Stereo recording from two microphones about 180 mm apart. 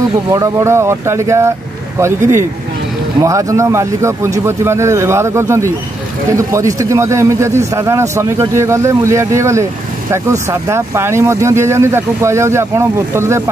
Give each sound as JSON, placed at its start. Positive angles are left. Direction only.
{"t": 0.3, "sound": "a man's voice", "side_deg": -15}
{"t": 3.2, "sound": "a man's voice", "side_deg": -15}